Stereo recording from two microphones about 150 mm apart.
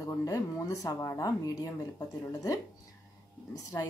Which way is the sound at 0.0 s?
20° left (ahead or behind).